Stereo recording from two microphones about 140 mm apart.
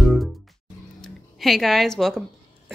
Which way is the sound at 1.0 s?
Centre (ahead or behind).